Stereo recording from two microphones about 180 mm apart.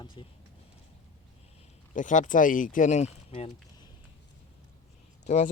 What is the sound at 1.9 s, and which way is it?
Speech, 45° left (ahead or behind).